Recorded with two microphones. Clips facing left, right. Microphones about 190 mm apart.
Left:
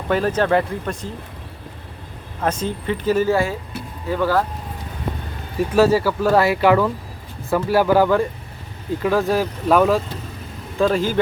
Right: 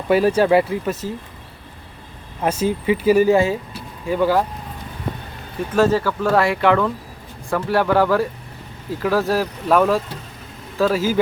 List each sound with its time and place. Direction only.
0.1 s speech: 10° right (ahead or behind)
2.4 s speech: 10° right (ahead or behind)
5.5 s speech: 5° left (ahead or behind)